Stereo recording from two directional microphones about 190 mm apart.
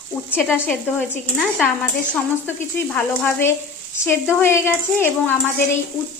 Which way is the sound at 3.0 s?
10° left (ahead or behind).